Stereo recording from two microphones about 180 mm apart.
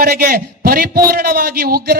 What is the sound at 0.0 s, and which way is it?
A man's voice, 60° right (ahead or behind).